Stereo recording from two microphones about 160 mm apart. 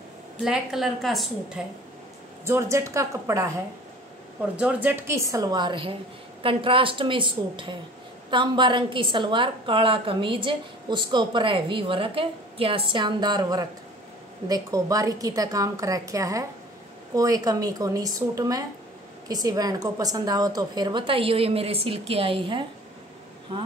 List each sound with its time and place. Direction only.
0.4 s a woman's voice: 5° right (ahead or behind)
2.4 s a woman's voice: 15° right (ahead or behind); by 22.7 s 35° right (ahead or behind)